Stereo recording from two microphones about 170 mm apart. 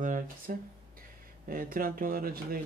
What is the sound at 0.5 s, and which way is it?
Speech, 50° right (ahead or behind).